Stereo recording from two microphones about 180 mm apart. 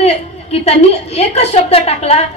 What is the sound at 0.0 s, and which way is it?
A woman's voice, 35° left (ahead or behind).